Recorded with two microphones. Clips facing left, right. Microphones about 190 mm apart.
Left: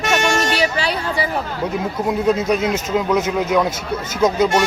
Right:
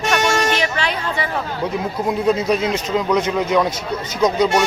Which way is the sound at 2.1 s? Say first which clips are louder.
Even; centre (ahead or behind).